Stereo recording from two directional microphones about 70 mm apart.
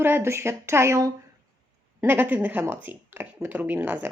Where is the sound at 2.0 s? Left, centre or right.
Right.